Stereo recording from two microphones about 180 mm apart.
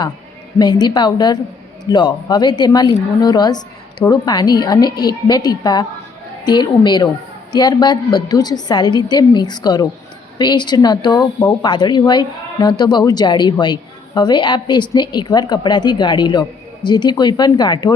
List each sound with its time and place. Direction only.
0.6 s speech: 25° left (ahead or behind)